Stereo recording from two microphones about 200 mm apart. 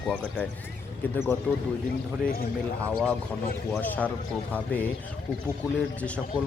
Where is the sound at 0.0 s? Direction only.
5° left (ahead or behind).